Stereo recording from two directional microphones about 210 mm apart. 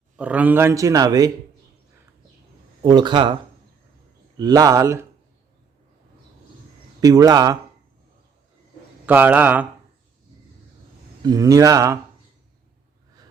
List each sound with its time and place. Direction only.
0.2 s a man's voice: 5° right (ahead or behind)
2.8 s speech: 20° right (ahead or behind)
4.4 s a man's voice: 20° right (ahead or behind)
7.0 s a man's voice: 15° right (ahead or behind)
9.0 s a man's voice: 10° right (ahead or behind)
11.2 s a man's voice: 20° right (ahead or behind)